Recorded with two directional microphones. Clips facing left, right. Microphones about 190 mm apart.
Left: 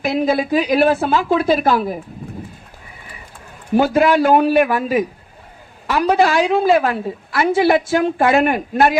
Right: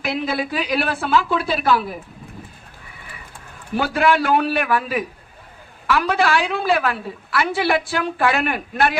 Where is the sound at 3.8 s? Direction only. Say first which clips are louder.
Left 5 dB; 40° left (ahead or behind).